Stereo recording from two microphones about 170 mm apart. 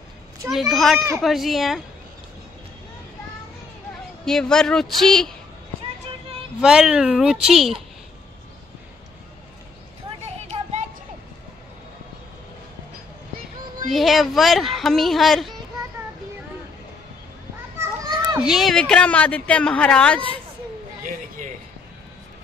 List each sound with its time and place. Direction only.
0.5 s speech: centre (ahead or behind)
4.2 s speech: 5° left (ahead or behind)
6.6 s speech: 5° right (ahead or behind)
10.5 s child singing: 30° right (ahead or behind)
13.8 s speech: centre (ahead or behind)
17.7 s children playing: 20° right (ahead or behind)
18.4 s a woman's voice: centre (ahead or behind)